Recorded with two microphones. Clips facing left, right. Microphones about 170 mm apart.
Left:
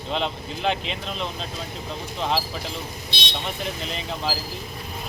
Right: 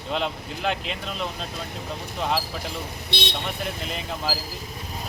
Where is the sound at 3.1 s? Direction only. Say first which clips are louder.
Right 7 dB; 60° right (ahead or behind).